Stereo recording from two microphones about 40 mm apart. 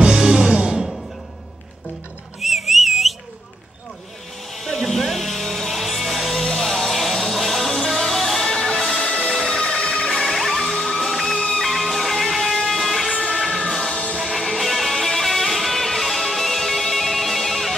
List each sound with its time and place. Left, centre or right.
0.0 s music: centre
2.4 s a sound: centre
4.6 s music: centre
8.5 s music: centre
10.2 s music: centre
11.3 s music: centre
11.6 s music: centre
13.7 s music: centre